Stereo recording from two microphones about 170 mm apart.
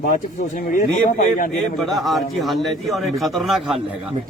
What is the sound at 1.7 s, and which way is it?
Speech, centre (ahead or behind).